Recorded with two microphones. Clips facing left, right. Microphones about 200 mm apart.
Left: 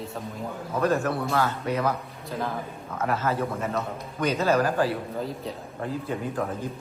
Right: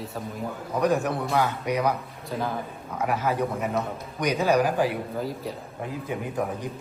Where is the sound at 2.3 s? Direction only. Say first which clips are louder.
Right 1 dB; centre (ahead or behind).